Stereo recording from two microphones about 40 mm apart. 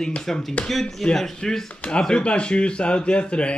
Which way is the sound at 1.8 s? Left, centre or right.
Left.